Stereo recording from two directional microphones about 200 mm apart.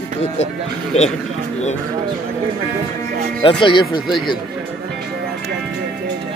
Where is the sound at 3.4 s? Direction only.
25° left (ahead or behind).